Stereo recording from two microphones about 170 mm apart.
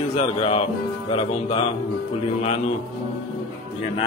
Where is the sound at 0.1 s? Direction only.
40° left (ahead or behind).